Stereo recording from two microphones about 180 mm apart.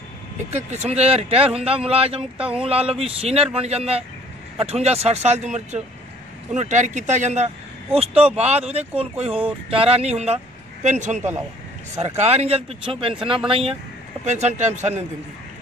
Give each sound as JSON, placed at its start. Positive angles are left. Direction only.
{"t": 0.7, "sound": "speech", "side_deg": -40}